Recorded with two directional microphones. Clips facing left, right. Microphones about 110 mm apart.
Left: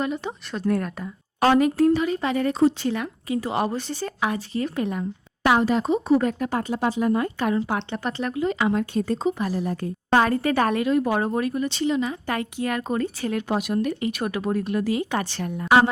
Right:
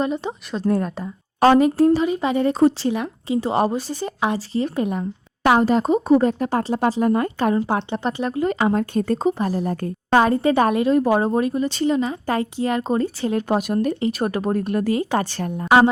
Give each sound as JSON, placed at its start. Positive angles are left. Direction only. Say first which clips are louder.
{"t": 0.0, "sound": "speech", "louder": "right 4 dB", "side_deg": -25}
{"t": 3.7, "sound": "speech", "louder": "right 3 dB", "side_deg": -15}
{"t": 4.2, "sound": "speech", "louder": "right 4 dB", "side_deg": -30}
{"t": 5.5, "sound": "a woman's voice", "louder": "right 3 dB", "side_deg": -40}
{"t": 6.1, "sound": "a woman's voice", "louder": "right 4 dB", "side_deg": -35}
{"t": 6.7, "sound": "a woman's voice", "louder": "right 3 dB", "side_deg": -45}
{"t": 8.4, "sound": "a woman's voice", "louder": "right 3 dB", "side_deg": -45}
{"t": 10.2, "sound": "speech", "louder": "right 4 dB", "side_deg": -25}
{"t": 11.7, "sound": "a woman's voice", "louder": "right 3 dB", "side_deg": -40}
{"t": 15.5, "sound": "speech", "louder": "right 3 dB", "side_deg": -25}